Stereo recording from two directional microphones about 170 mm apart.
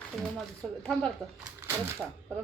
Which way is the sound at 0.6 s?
5° left (ahead or behind).